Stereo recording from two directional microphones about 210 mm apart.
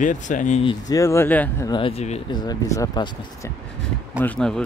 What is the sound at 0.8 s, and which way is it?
Speech, 15° left (ahead or behind).